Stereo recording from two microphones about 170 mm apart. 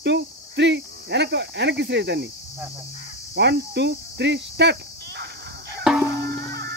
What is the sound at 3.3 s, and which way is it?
Speech, 90° right.